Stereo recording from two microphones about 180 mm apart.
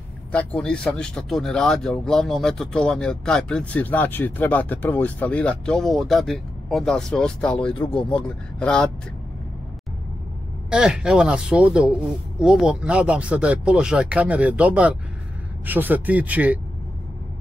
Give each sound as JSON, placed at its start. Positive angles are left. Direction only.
{"t": 0.3, "sound": "speech", "side_deg": 5}
{"t": 7.6, "sound": "speech", "side_deg": 30}
{"t": 8.5, "sound": "speech", "side_deg": 5}
{"t": 10.7, "sound": "speech", "side_deg": -5}